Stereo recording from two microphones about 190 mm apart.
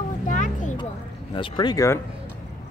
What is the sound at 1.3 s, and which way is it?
Speech, 25° left (ahead or behind).